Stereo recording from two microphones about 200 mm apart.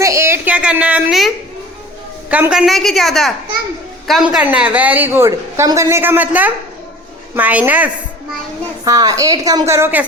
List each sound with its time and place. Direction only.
0.0 s a sound: 15° right (ahead or behind)
2.3 s a woman's voice: 5° right (ahead or behind)
8.8 s a woman's voice: 20° right (ahead or behind)